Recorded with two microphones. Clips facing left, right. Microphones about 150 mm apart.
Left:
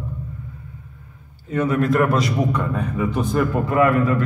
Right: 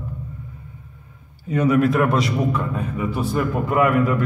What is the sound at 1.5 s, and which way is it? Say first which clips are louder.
A man's voice: right 2 dB; 15° right (ahead or behind).